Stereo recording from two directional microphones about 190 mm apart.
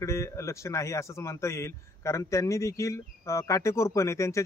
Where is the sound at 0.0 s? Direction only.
15° left (ahead or behind).